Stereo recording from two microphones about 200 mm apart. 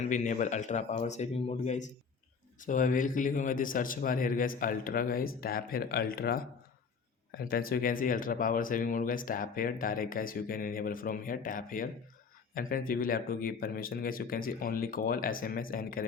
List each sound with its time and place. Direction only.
0.1 s a man's voice: 40° left (ahead or behind)